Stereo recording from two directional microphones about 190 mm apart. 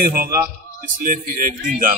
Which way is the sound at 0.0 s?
50° right (ahead or behind).